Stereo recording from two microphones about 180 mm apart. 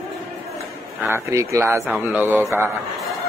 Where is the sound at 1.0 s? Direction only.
15° right (ahead or behind).